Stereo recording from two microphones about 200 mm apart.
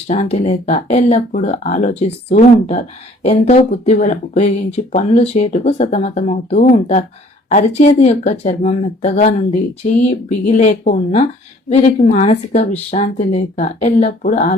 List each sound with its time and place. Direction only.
0.1 s speech: 35° left (ahead or behind)